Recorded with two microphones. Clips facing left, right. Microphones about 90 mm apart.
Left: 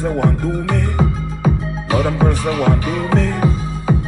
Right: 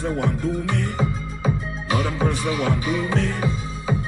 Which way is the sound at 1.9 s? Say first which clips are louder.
Left 6 dB; 30° left (ahead or behind).